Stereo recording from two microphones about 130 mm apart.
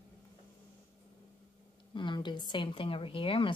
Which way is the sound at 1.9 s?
35° left (ahead or behind).